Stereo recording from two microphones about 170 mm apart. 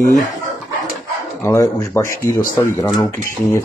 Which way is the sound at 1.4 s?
15° left (ahead or behind).